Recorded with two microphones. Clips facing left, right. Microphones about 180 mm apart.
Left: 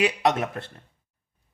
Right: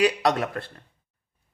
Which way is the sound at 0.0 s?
20° left (ahead or behind).